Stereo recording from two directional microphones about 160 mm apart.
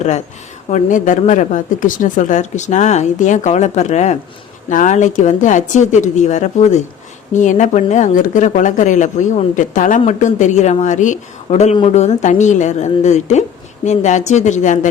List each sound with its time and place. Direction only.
0.7 s a woman's voice: 55° left (ahead or behind)